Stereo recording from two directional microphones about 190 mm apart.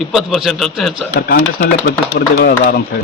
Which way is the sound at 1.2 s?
50° left (ahead or behind).